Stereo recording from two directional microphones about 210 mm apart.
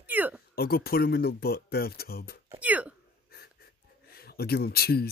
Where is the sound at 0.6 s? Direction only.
45° left (ahead or behind).